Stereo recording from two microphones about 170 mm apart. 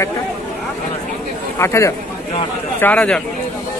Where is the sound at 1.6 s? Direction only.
15° left (ahead or behind).